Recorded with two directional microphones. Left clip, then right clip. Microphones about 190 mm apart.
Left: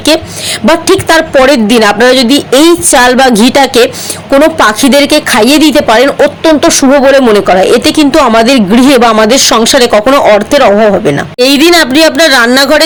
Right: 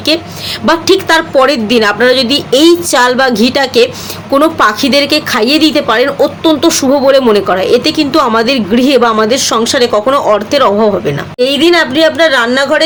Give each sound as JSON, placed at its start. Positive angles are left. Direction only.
{"t": 0.6, "sound": "a woman's voice", "side_deg": 35}